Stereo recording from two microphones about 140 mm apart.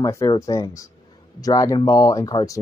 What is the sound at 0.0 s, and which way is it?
Speech, 25° left (ahead or behind).